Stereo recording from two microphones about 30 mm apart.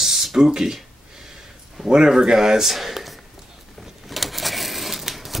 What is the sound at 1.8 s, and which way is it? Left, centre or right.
Speech, right.